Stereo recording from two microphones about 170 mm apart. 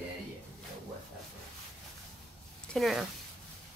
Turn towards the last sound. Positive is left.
turn(degrees=0)  # may be behind; listen again after turning